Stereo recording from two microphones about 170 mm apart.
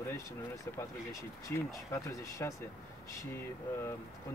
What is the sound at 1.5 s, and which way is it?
Speech, 20° left (ahead or behind).